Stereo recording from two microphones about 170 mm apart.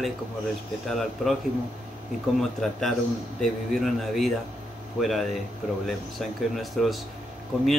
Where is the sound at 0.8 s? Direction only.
Centre (ahead or behind).